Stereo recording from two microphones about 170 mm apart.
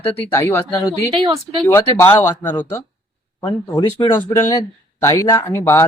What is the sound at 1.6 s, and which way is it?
Speech, 15° left (ahead or behind).